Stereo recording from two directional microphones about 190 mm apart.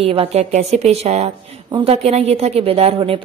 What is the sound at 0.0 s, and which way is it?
A woman's voice, 30° right (ahead or behind).